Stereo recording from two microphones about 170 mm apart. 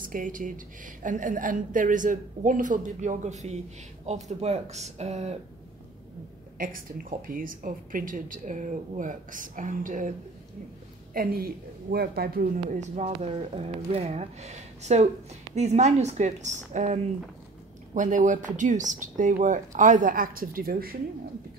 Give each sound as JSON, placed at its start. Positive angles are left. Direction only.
{"t": 0.0, "sound": "a woman's voice", "side_deg": -50}
{"t": 6.6, "sound": "a woman's voice", "side_deg": -55}
{"t": 11.1, "sound": "speech", "side_deg": -65}
{"t": 12.7, "sound": "a woman's voice", "side_deg": -45}